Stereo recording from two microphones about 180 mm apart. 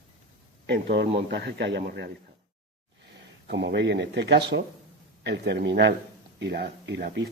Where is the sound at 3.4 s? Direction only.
75° right (ahead or behind).